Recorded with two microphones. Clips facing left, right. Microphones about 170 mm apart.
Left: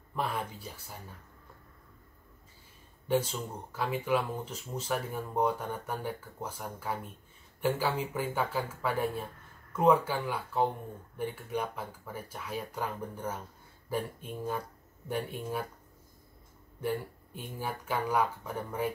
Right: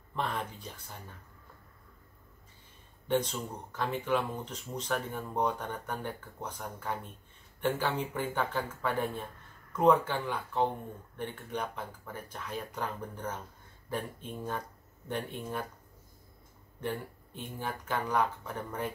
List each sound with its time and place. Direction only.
0.1 s speech: 10° left (ahead or behind)
3.1 s speech: 5° left (ahead or behind)
16.8 s speech: 10° left (ahead or behind)